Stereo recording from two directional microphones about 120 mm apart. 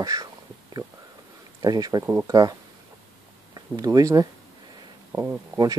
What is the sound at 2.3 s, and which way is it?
Speech, 30° right (ahead or behind).